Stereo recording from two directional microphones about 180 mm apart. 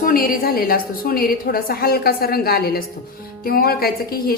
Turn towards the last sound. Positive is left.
turn(degrees=55)  # may be behind; listen again after turning